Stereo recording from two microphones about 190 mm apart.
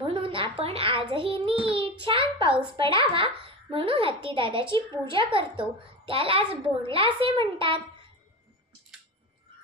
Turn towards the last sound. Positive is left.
turn(degrees=-30)  # may be behind; listen again after turning